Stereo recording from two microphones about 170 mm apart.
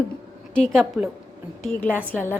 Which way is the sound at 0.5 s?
Centre (ahead or behind).